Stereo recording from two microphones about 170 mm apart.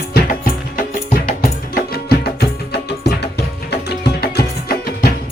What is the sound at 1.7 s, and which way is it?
Music, 65° left (ahead or behind).